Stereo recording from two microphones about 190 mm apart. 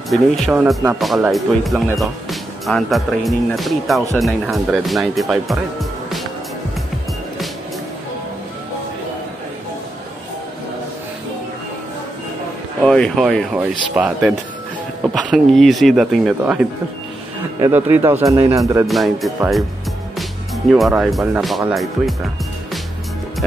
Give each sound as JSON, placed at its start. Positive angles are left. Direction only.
{"t": 0.1, "sound": "speech", "side_deg": -5}
{"t": 12.8, "sound": "speech", "side_deg": 5}
{"t": 17.6, "sound": "speech", "side_deg": -10}
{"t": 18.9, "sound": "speech", "side_deg": 0}
{"t": 20.2, "sound": "music", "side_deg": 0}
{"t": 21.4, "sound": "speech", "side_deg": 0}